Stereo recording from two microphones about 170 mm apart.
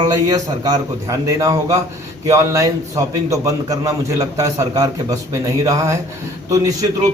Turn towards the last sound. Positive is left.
turn(degrees=-20)  # may be behind; listen again after turning